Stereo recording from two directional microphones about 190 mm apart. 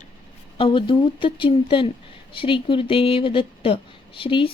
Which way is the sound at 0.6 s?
25° left (ahead or behind).